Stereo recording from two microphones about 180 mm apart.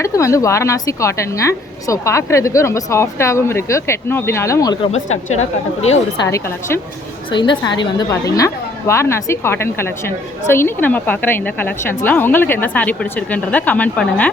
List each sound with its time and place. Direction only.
0.0 s a woman's voice: 15° left (ahead or behind)
5.3 s a woman's voice: 35° left (ahead or behind)
7.3 s a woman's voice: 25° left (ahead or behind); by 14.3 s 10° left (ahead or behind)